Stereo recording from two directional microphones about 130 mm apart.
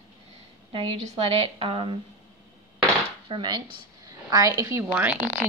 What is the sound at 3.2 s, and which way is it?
Speech, 35° right (ahead or behind).